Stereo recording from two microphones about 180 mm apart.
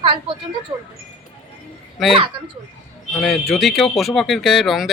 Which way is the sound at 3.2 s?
Centre (ahead or behind).